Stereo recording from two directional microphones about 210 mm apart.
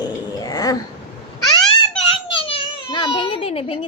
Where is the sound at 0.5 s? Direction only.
15° left (ahead or behind).